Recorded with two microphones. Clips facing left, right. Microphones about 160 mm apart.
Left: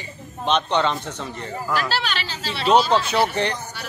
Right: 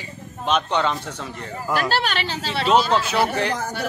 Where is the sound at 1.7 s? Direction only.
50° right (ahead or behind).